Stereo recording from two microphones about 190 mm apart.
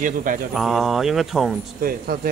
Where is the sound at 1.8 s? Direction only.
50° right (ahead or behind).